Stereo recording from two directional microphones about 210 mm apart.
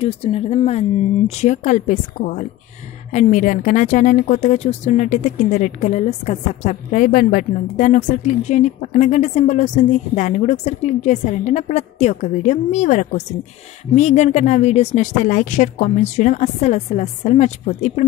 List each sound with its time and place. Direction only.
0.0 s a woman's voice: 30° left (ahead or behind)